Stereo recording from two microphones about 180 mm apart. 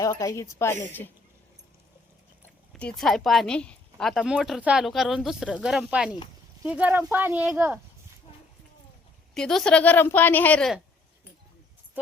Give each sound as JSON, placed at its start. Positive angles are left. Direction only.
{"t": 0.0, "sound": "a woman's voice", "side_deg": 20}
{"t": 2.7, "sound": "speech", "side_deg": 5}
{"t": 9.3, "sound": "a woman's voice", "side_deg": 0}